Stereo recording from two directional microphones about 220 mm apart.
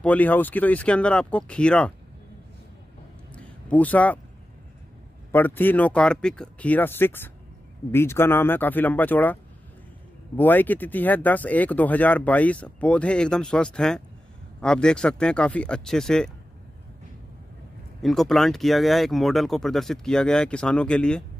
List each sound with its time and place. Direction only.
0.0 s speech: 5° left (ahead or behind)
3.3 s a sound: 5° left (ahead or behind)
5.3 s speech: 10° left (ahead or behind)
18.0 s speech: centre (ahead or behind)